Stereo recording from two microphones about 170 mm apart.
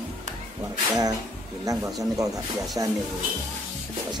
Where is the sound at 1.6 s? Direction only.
20° right (ahead or behind).